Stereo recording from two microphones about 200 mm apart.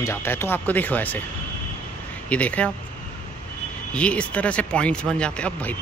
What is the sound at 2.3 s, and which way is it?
Speech, 5° left (ahead or behind).